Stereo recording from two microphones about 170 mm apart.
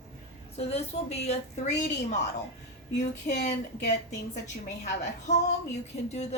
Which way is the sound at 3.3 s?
45° left (ahead or behind).